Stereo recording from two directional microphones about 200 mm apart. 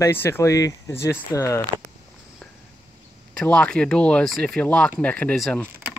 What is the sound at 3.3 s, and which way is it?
Speech, 5° left (ahead or behind).